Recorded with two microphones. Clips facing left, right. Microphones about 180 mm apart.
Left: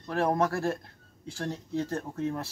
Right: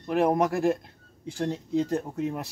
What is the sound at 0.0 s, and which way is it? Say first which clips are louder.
Speech: right 4 dB; 15° right (ahead or behind).